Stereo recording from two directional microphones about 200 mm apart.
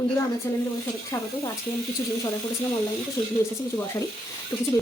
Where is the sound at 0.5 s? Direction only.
15° left (ahead or behind).